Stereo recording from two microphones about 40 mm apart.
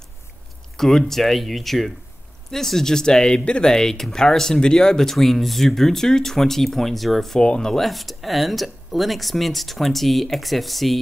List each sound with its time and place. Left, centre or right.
0.7 s speech: centre
3.6 s speech: centre
7.3 s speech: centre
7.7 s speech: centre